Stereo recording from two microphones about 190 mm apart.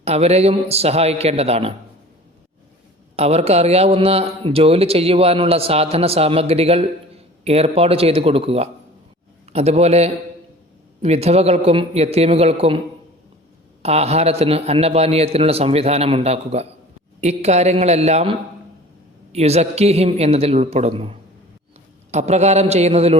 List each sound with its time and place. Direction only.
0.0 s speech: 35° right (ahead or behind)
3.2 s speech: 35° right (ahead or behind)
13.8 s speech: 35° right (ahead or behind)